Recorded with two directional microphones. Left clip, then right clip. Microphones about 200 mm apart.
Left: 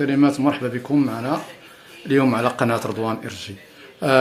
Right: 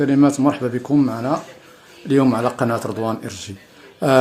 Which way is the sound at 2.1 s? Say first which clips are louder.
Right 1 dB; 30° right (ahead or behind).